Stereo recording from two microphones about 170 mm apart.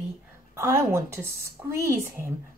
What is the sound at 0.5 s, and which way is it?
A woman's voice, 15° right (ahead or behind).